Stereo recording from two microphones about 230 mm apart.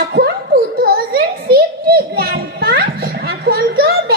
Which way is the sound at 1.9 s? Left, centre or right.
Right.